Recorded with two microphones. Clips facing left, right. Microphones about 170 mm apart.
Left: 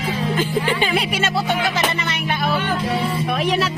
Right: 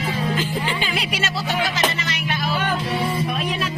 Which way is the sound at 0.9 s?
55° left (ahead or behind).